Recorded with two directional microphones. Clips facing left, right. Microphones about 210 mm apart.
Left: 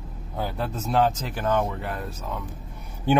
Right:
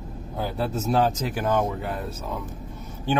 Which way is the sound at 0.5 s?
10° right (ahead or behind).